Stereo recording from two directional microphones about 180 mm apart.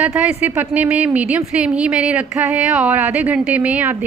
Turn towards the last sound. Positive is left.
turn(degrees=-10)  # may be behind; listen again after turning